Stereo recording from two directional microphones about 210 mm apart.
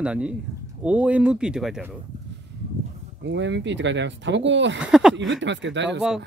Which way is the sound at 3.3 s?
60° right (ahead or behind).